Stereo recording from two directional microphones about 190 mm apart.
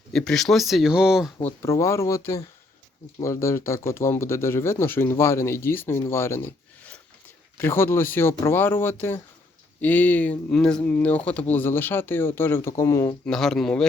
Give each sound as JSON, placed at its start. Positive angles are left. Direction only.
{"t": 0.1, "sound": "speech", "side_deg": 5}
{"t": 1.6, "sound": "speech", "side_deg": 15}
{"t": 13.2, "sound": "speech", "side_deg": 5}